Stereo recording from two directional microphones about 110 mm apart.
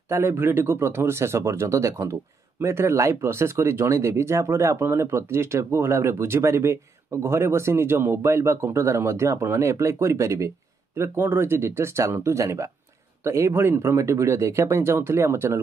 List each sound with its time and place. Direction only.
0.1 s speech: 25° right (ahead or behind)